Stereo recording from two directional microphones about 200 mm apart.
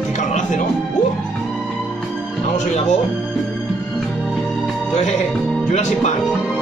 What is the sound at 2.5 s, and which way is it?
Speech, 35° left (ahead or behind).